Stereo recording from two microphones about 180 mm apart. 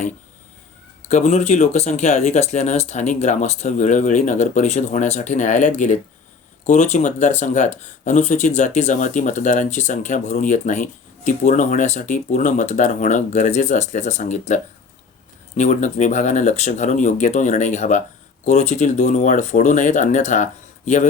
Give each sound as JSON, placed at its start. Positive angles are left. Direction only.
{"t": 1.0, "sound": "speech", "side_deg": 40}